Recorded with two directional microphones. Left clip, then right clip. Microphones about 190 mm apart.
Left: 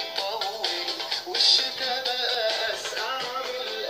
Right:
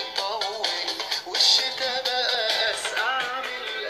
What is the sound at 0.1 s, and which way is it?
Music, 35° right (ahead or behind).